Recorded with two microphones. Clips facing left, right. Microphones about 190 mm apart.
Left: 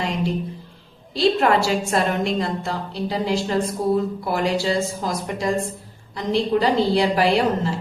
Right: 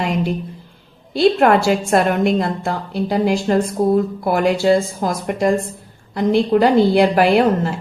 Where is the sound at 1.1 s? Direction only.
55° right (ahead or behind).